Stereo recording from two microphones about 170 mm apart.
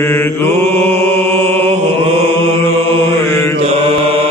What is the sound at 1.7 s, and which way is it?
Mantra, 35° right (ahead or behind).